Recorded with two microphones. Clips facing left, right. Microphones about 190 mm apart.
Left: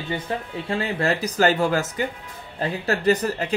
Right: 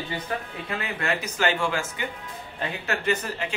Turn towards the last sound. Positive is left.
turn(degrees=40)  # may be behind; listen again after turning